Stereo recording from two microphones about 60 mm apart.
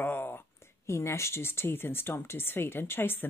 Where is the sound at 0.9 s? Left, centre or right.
Left.